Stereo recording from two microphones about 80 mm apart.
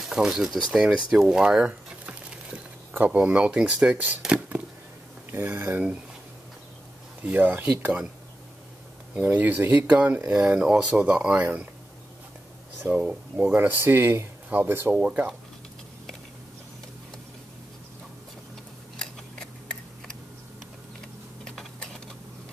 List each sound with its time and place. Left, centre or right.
0.1 s speech: centre
5.3 s speech: right
7.2 s speech: right
9.2 s speech: right
10.5 s speech: centre
12.8 s speech: centre
13.6 s speech: right
15.0 s speech: centre
18.9 s a sound: centre
21.7 s typing: centre